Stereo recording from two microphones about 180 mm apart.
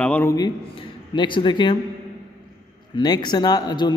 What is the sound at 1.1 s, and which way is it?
Speech, 25° left (ahead or behind).